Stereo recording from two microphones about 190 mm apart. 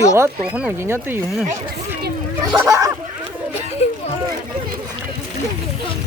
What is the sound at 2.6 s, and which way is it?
Speech, 15° right (ahead or behind).